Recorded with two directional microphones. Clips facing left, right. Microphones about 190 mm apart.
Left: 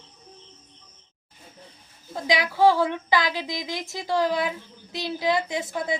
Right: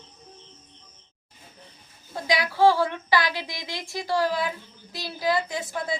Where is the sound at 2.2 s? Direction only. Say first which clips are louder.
Even; 20° left (ahead or behind).